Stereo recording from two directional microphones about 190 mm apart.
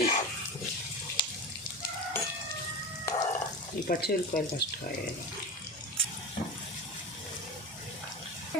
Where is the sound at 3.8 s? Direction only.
45° left (ahead or behind).